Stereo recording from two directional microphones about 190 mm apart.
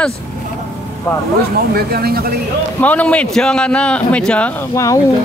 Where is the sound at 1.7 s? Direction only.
55° right (ahead or behind).